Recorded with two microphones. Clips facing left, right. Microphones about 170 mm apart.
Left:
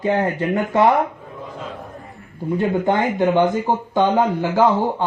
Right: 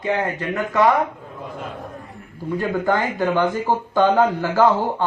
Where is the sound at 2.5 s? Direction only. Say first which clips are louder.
Left 2 dB; 20° left (ahead or behind).